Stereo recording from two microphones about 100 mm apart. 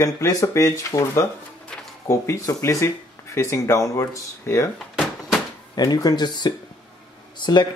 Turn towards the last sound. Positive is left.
turn(degrees=45)  # may be behind; listen again after turning